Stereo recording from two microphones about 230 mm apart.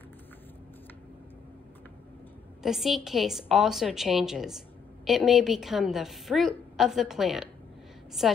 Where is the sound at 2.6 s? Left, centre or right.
Centre.